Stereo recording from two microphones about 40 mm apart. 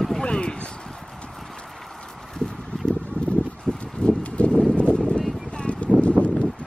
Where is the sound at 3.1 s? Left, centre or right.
Left.